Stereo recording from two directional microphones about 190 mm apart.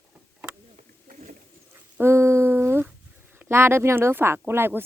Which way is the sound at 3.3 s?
10° right (ahead or behind).